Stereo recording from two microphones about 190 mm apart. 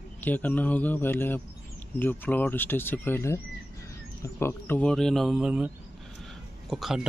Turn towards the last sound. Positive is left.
turn(degrees=0)  # may be behind; listen again after turning